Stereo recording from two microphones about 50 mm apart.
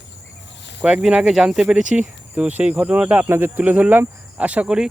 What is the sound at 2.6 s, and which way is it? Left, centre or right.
Cricket, right.